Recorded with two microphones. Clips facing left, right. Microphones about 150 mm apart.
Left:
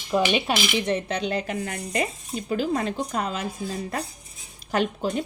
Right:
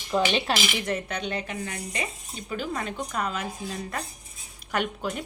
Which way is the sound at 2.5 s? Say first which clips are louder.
Left 6 dB; 35° left (ahead or behind).